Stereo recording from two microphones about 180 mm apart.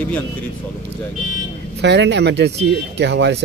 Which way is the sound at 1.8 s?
75° right (ahead or behind).